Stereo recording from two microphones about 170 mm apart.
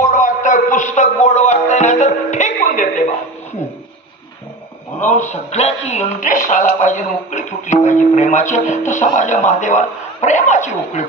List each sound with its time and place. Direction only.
0.0 s music: 50° left (ahead or behind)
5.0 s speech: 45° left (ahead or behind)